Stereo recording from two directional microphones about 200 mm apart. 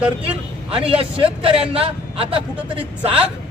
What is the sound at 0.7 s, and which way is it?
A man's voice, 30° right (ahead or behind).